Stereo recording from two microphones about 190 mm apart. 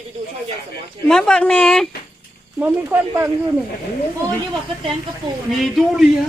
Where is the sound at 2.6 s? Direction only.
10° right (ahead or behind).